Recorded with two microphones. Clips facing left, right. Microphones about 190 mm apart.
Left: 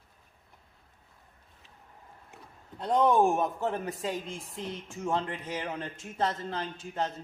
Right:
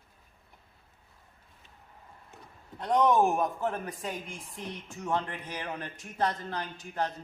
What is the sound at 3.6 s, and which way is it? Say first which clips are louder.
Speech: left 1 dB; 25° left (ahead or behind).